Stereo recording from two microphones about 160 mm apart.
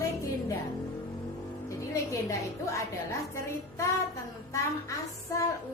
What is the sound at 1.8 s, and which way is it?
A woman's voice, 20° left (ahead or behind).